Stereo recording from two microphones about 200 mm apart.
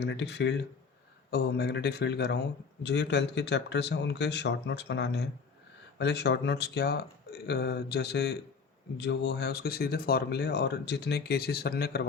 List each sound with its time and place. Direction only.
0.0 s speech: 60° left (ahead or behind)